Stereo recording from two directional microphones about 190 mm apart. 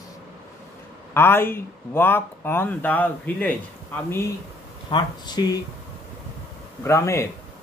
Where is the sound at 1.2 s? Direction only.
10° left (ahead or behind).